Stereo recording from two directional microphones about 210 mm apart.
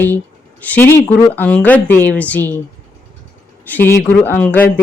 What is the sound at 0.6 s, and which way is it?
Speech, 10° left (ahead or behind).